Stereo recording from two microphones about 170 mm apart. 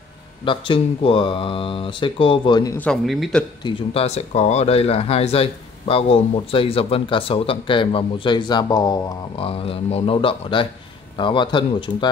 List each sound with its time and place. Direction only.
0.5 s speech: 30° left (ahead or behind)
2.8 s speech: centre (ahead or behind)
3.6 s speech: 35° left (ahead or behind)